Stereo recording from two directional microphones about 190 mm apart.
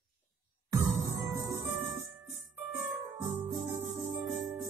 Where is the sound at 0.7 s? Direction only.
20° right (ahead or behind).